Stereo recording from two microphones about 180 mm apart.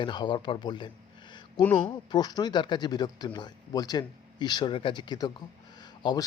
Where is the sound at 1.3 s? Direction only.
25° left (ahead or behind).